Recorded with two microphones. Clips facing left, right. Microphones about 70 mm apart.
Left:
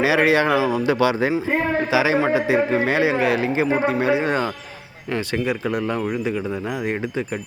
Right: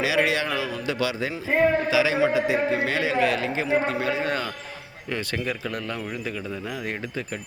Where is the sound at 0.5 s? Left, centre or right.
Left.